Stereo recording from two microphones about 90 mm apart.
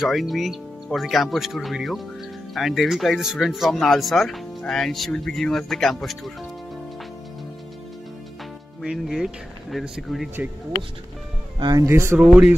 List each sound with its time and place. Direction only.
0.0 s speech: centre (ahead or behind)
8.8 s speech: centre (ahead or behind)
11.6 s speech: 40° right (ahead or behind)
12.2 s speech: 15° right (ahead or behind)